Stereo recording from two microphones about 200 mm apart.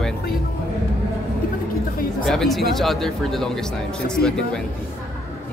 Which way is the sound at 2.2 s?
Centre (ahead or behind).